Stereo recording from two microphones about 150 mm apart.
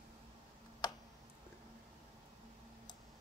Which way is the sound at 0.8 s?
25° left (ahead or behind).